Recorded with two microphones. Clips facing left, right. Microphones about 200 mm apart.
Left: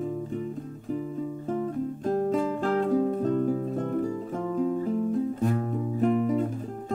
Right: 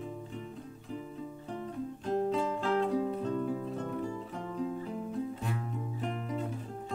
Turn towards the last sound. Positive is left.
turn(degrees=45)  # may be behind; listen again after turning